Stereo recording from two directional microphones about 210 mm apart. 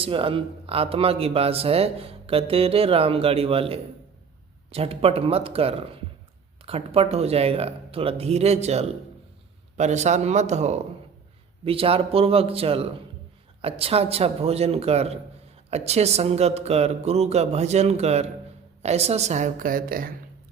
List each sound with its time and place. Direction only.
0.0 s speech: 25° right (ahead or behind); by 20.1 s 45° right (ahead or behind)